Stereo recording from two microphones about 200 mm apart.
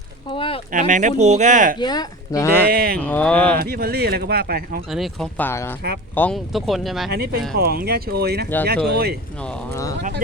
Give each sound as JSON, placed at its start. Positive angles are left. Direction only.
{"t": 0.3, "sound": "speech", "side_deg": 25}
{"t": 0.7, "sound": "speech", "side_deg": -40}
{"t": 1.8, "sound": "speech", "side_deg": 20}
{"t": 2.6, "sound": "speech", "side_deg": -45}
{"t": 3.0, "sound": "speech", "side_deg": 10}
{"t": 3.6, "sound": "speech", "side_deg": -50}
{"t": 4.9, "sound": "speech", "side_deg": 0}
{"t": 7.6, "sound": "speech", "side_deg": -50}
{"t": 9.4, "sound": "speech", "side_deg": 5}